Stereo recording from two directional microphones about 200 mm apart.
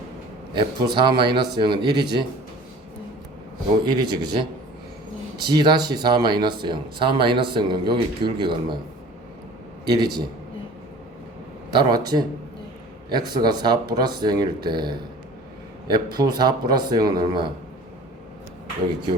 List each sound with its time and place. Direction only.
0.5 s speech: 25° right (ahead or behind)
3.8 s speech: 20° right (ahead or behind)
5.5 s speech: 20° right (ahead or behind)
9.8 s speech: 20° right (ahead or behind)
11.7 s speech: 20° right (ahead or behind)
15.9 s speech: 20° right (ahead or behind)